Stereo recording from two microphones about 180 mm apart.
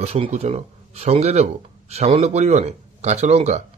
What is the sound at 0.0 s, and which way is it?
A man's voice, 35° right (ahead or behind).